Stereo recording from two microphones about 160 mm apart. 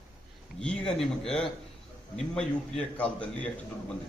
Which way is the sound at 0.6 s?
5° left (ahead or behind).